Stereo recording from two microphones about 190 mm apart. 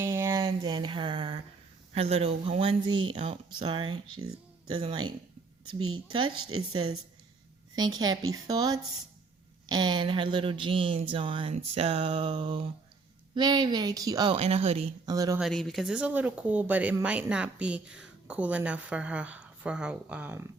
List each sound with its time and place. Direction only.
0.0 s a sound: 10° right (ahead or behind)
0.4 s a sound: 25° right (ahead or behind)
2.0 s speech: 30° right (ahead or behind)
4.1 s speech: 90° right
4.7 s speech: 25° right (ahead or behind)
7.8 s speech: 20° right (ahead or behind)
14.3 s speech: 35° right (ahead or behind)
15.0 s speech: 20° right (ahead or behind)
15.4 s speech: centre (ahead or behind)